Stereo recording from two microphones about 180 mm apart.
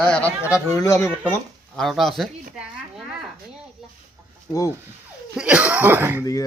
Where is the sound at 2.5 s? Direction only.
Centre (ahead or behind).